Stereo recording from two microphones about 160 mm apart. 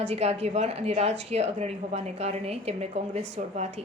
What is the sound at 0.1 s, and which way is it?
A woman's voice, 40° right (ahead or behind).